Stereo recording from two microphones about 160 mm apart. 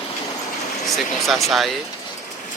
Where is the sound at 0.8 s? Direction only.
Centre (ahead or behind).